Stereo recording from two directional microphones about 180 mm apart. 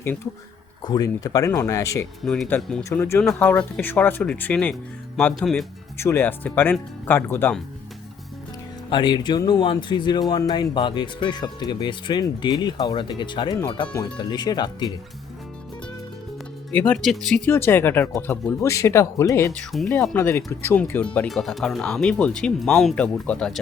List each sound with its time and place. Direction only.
0.8 s speech: 25° left (ahead or behind)
2.2 s speech: 5° left (ahead or behind)
6.0 s speech: 10° left (ahead or behind)
8.9 s speech: 25° left (ahead or behind)
16.7 s speech: 5° left (ahead or behind)
19.7 s speech: centre (ahead or behind)
20.1 s speech: 15° left (ahead or behind)